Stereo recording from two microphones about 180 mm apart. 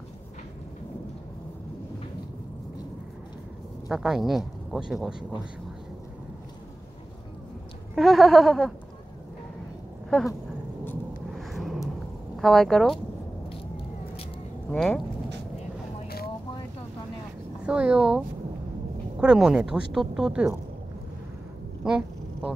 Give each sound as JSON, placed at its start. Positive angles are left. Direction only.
{"t": 3.9, "sound": "speech", "side_deg": -5}
{"t": 7.9, "sound": "speech", "side_deg": 0}
{"t": 10.0, "sound": "a sound", "side_deg": 0}
{"t": 11.3, "sound": "vehicle", "side_deg": 0}
{"t": 12.4, "sound": "speech", "side_deg": 0}
{"t": 14.7, "sound": "speech", "side_deg": 0}
{"t": 17.6, "sound": "speech", "side_deg": -5}
{"t": 21.8, "sound": "a sound", "side_deg": -5}